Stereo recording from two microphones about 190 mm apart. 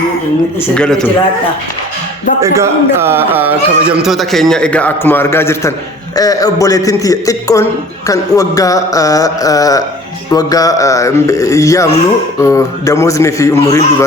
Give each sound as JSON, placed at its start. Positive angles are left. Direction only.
{"t": 0.7, "sound": "a man's voice", "side_deg": 5}
{"t": 2.4, "sound": "a man's voice", "side_deg": -15}